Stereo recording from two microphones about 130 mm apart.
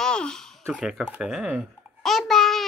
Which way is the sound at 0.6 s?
5° right (ahead or behind).